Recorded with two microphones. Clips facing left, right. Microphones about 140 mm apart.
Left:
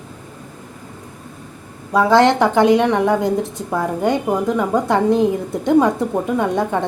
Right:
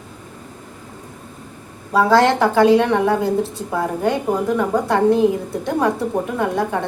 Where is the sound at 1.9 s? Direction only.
20° left (ahead or behind).